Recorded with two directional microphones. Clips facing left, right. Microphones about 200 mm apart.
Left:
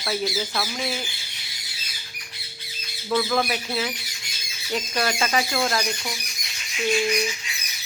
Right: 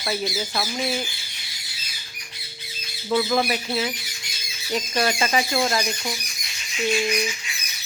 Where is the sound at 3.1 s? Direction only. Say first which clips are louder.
Right 2 dB; 10° right (ahead or behind).